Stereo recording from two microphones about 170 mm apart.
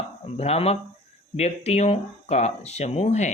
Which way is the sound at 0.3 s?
35° left (ahead or behind).